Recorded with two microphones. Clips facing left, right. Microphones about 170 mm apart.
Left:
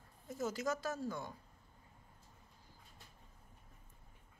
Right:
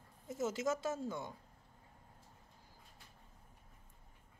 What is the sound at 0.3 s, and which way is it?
Speech, 25° right (ahead or behind).